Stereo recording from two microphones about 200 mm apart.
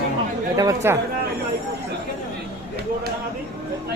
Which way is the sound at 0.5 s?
15° right (ahead or behind).